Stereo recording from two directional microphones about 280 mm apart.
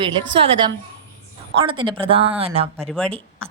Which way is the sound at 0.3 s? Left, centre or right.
Centre.